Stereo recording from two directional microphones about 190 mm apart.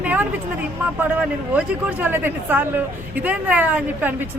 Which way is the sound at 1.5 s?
10° right (ahead or behind).